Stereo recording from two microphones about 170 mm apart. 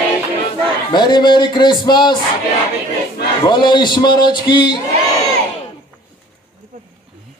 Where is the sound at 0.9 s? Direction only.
25° left (ahead or behind).